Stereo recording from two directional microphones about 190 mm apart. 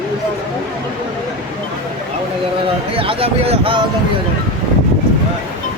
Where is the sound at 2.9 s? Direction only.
30° right (ahead or behind).